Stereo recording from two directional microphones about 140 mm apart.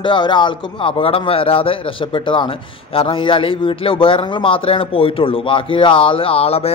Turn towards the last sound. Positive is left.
turn(degrees=45)  # may be behind; listen again after turning